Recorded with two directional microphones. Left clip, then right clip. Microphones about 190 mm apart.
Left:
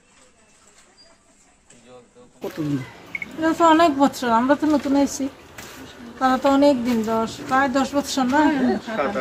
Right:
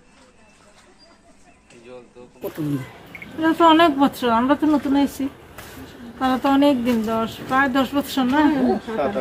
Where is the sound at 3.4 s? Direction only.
5° right (ahead or behind).